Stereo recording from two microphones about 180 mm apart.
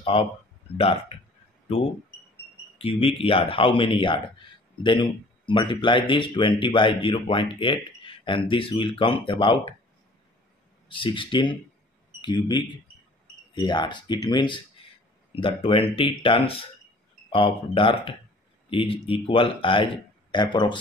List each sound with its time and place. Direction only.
0.0 s speech: 30° left (ahead or behind)
2.8 s speech: 30° left (ahead or behind)
11.0 s speech: 30° left (ahead or behind)